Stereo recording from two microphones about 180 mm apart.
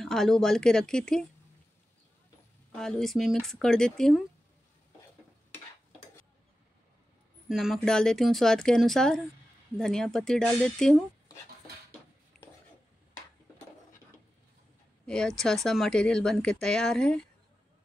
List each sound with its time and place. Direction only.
0.0 s speech: centre (ahead or behind)
2.7 s speech: 5° left (ahead or behind)
7.4 s speech: centre (ahead or behind)
15.0 s speech: 5° left (ahead or behind)